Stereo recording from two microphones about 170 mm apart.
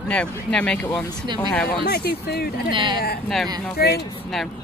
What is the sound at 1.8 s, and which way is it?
Speech, 70° left (ahead or behind).